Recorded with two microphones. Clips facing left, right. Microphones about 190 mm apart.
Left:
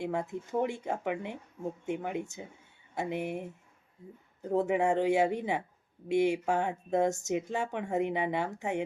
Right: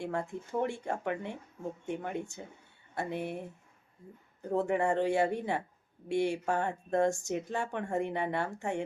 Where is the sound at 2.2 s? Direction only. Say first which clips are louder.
Left 1 dB; 20° left (ahead or behind).